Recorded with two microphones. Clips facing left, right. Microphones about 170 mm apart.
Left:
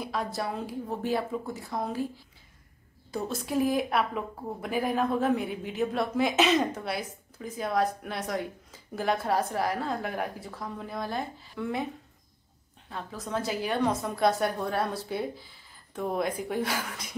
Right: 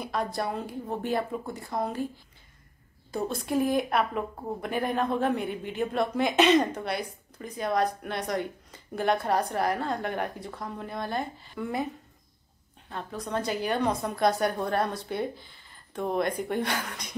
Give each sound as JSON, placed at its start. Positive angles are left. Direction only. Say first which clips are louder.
{"t": 0.0, "sound": "a woman's voice", "louder": "right 2 dB", "side_deg": 0}
{"t": 3.1, "sound": "a woman's voice", "louder": "right 2 dB", "side_deg": 0}
{"t": 12.9, "sound": "a woman's voice", "louder": "right 1 dB", "side_deg": 5}